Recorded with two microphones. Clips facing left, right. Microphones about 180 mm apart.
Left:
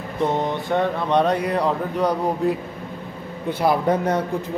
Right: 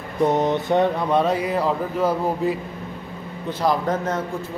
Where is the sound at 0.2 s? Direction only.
20° right (ahead or behind).